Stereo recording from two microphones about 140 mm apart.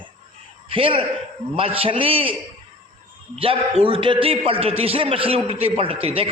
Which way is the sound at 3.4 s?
40° right (ahead or behind).